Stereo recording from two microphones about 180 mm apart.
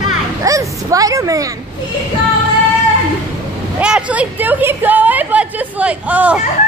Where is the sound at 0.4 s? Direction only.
20° right (ahead or behind).